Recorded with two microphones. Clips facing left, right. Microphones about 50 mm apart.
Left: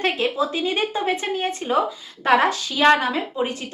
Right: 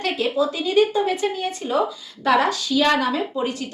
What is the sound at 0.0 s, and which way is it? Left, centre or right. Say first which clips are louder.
A woman's voice: even; left.